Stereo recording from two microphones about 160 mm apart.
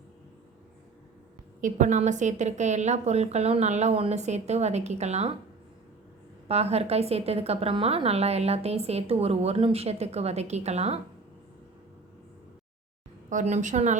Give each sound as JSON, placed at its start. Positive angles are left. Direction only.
{"t": 1.6, "sound": "a woman's voice", "side_deg": -50}
{"t": 6.5, "sound": "a woman's voice", "side_deg": -40}
{"t": 13.3, "sound": "a woman's voice", "side_deg": -45}